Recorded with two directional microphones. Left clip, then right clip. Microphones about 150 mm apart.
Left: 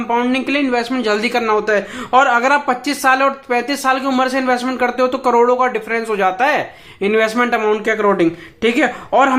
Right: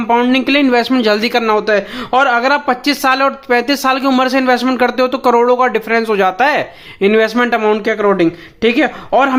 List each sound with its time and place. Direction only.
0.1 s a man's voice: 35° right (ahead or behind)